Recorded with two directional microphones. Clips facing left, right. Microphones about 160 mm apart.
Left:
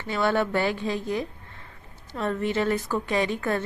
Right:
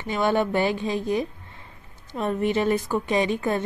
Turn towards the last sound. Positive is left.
turn(degrees=-20)  # may be behind; listen again after turning